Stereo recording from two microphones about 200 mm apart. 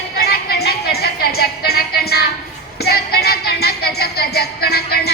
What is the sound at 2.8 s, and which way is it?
Music, 50° left (ahead or behind).